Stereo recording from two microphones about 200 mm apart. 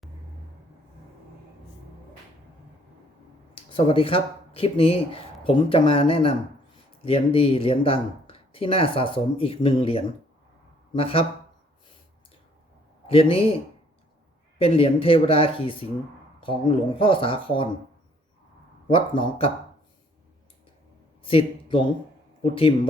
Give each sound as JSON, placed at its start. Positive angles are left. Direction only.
{"t": 3.5, "sound": "speech", "side_deg": 25}
{"t": 13.1, "sound": "a man's voice", "side_deg": 30}
{"t": 14.6, "sound": "speech", "side_deg": 25}
{"t": 17.0, "sound": "speech", "side_deg": 25}
{"t": 18.9, "sound": "speech", "side_deg": 25}
{"t": 21.2, "sound": "speech", "side_deg": 25}